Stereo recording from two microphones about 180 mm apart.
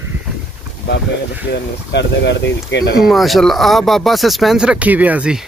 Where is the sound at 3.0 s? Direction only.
Centre (ahead or behind).